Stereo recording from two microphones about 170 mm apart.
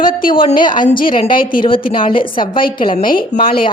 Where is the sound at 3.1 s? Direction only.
60° left (ahead or behind).